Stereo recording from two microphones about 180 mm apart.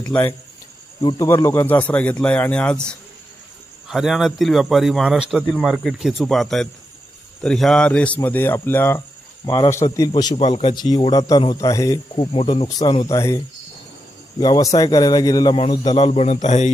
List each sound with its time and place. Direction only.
0.1 s speech: 10° left (ahead or behind)
3.8 s speech: centre (ahead or behind)
5.4 s a man's voice: 10° left (ahead or behind)
10.3 s speech: 40° left (ahead or behind)
10.8 s a man's voice: 20° left (ahead or behind); by 16.7 s 40° left (ahead or behind)